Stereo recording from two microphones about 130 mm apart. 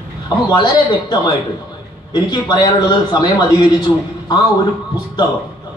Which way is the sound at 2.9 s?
35° left (ahead or behind).